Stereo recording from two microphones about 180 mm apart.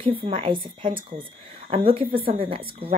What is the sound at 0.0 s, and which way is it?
Speech, 30° right (ahead or behind).